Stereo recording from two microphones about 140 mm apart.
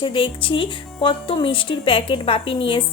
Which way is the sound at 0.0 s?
40° left (ahead or behind).